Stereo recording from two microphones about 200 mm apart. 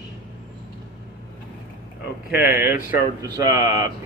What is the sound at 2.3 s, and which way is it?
Speech, 10° right (ahead or behind).